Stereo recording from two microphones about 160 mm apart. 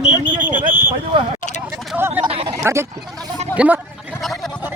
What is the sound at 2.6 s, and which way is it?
Speech, 15° right (ahead or behind).